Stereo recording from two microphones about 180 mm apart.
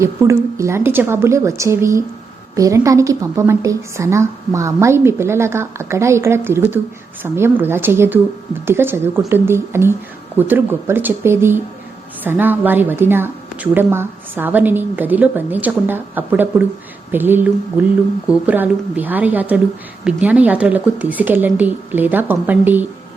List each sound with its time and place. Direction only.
0.0 s a woman's voice: 15° right (ahead or behind)